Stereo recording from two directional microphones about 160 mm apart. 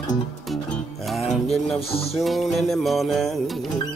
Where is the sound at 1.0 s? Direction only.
Centre (ahead or behind).